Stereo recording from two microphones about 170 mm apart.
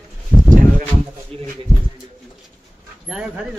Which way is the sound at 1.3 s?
35° right (ahead or behind).